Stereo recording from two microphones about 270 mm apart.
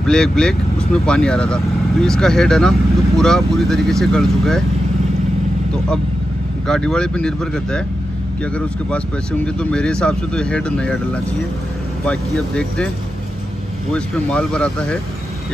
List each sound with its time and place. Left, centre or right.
0.0 s speech: centre
6.7 s speech: centre
9.6 s speech: centre
12.1 s speech: centre
13.9 s speech: centre